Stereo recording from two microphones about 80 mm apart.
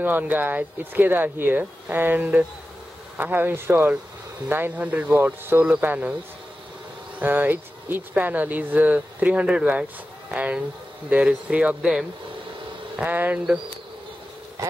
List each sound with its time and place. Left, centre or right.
0.0 s speech: right
7.2 s speech: right
12.9 s speech: centre